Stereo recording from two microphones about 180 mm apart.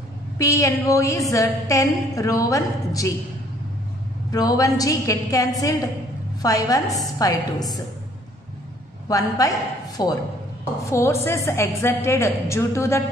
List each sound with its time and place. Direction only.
0.4 s a woman's voice: 15° left (ahead or behind)
4.3 s a woman's voice: 20° left (ahead or behind)
9.1 s a woman's voice: 20° left (ahead or behind)